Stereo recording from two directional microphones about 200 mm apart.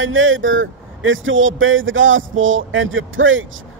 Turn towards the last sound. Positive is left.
turn(degrees=-75)  # may be behind; listen again after turning